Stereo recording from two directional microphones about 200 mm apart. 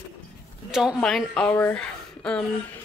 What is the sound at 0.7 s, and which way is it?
Speech, centre (ahead or behind).